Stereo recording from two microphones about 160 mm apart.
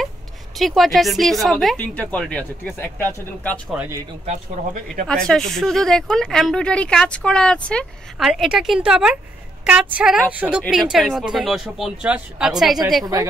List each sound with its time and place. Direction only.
0.6 s speech: centre (ahead or behind)
4.3 s speech: 60° right (ahead or behind)
5.0 s a woman's voice: 5° left (ahead or behind)
13.0 s a woman's voice: 20° right (ahead or behind)